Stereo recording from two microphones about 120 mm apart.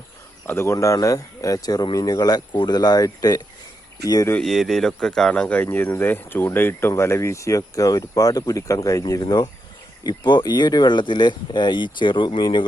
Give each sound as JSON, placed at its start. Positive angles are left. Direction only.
{"t": 0.4, "sound": "speech", "side_deg": 20}
{"t": 4.4, "sound": "speech", "side_deg": 0}